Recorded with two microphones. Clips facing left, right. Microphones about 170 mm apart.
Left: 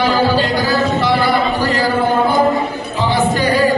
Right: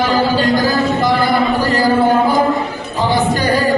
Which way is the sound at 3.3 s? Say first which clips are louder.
Left 1 dB; 45° right (ahead or behind).